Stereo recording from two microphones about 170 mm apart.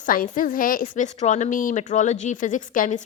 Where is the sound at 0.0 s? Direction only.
55° left (ahead or behind).